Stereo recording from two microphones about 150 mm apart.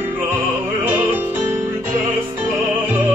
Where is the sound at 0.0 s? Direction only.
15° right (ahead or behind).